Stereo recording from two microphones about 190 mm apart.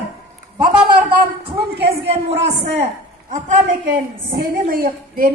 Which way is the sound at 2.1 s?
35° right (ahead or behind).